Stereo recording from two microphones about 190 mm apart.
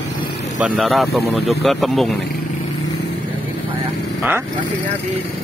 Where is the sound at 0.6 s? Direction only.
5° right (ahead or behind).